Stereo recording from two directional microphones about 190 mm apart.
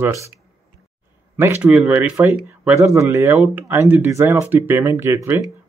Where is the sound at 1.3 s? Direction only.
10° right (ahead or behind).